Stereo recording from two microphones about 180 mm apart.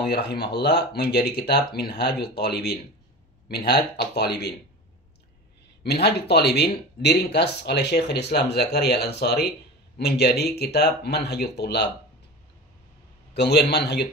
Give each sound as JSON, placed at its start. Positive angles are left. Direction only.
{"t": 0.0, "sound": "speech", "side_deg": 65}
{"t": 5.9, "sound": "speech", "side_deg": 65}
{"t": 13.3, "sound": "a man's voice", "side_deg": 65}